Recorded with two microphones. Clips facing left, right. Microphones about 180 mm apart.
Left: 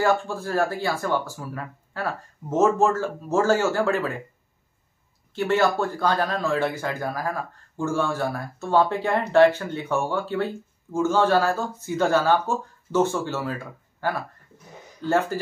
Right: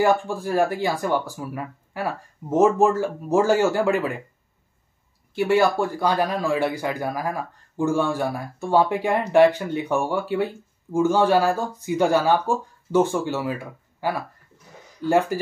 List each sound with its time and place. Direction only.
0.0 s speech: 15° right (ahead or behind)
5.3 s speech: 10° right (ahead or behind)